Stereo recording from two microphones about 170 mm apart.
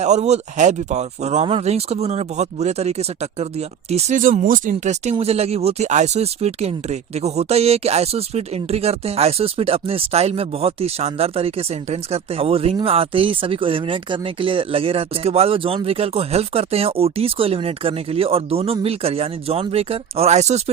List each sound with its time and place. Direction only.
0.0 s speech: 40° right (ahead or behind)
4.2 s speech: 55° right (ahead or behind)